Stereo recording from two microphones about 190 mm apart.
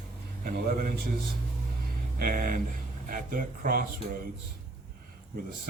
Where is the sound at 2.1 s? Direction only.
50° right (ahead or behind).